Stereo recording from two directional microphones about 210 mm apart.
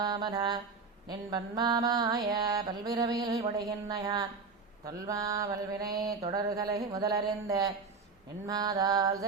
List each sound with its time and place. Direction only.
0.0 s mantra: 20° right (ahead or behind)